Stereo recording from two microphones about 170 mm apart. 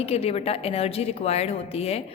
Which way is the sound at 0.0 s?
35° left (ahead or behind).